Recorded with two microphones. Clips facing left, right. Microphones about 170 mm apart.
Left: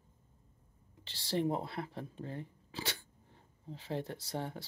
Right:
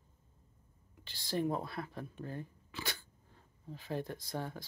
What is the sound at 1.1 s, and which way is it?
Speech, 30° left (ahead or behind).